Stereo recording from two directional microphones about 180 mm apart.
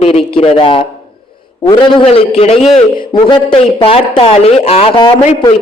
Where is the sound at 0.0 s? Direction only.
30° left (ahead or behind).